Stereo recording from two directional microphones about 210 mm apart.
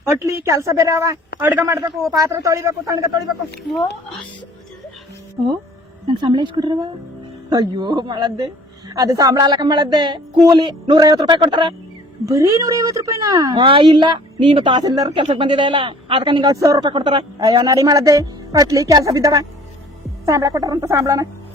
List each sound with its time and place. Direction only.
0.0 s a woman's voice: 15° right (ahead or behind)
6.1 s a woman's voice: 20° right (ahead or behind)